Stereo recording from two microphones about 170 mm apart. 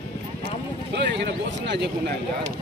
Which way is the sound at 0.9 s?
80° right.